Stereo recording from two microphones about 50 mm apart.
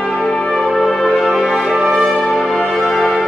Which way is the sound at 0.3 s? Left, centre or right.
Centre.